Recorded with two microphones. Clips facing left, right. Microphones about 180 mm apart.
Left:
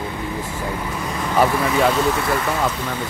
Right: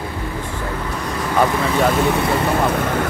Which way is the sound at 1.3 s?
5° left (ahead or behind).